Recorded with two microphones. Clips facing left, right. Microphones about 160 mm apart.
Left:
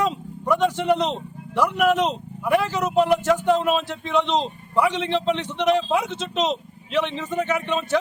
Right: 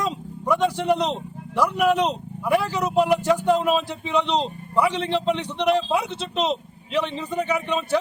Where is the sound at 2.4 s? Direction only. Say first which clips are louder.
Left 1 dB; 10° right (ahead or behind).